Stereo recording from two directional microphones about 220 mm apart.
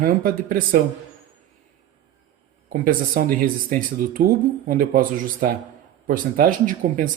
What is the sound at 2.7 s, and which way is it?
Speech, 40° right (ahead or behind).